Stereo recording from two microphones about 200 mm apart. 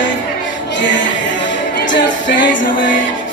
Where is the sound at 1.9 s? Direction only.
65° left (ahead or behind).